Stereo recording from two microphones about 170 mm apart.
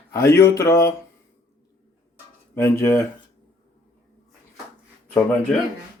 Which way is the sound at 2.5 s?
15° left (ahead or behind).